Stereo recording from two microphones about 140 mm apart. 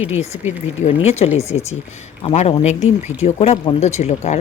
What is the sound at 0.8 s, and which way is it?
Speech, 50° left (ahead or behind).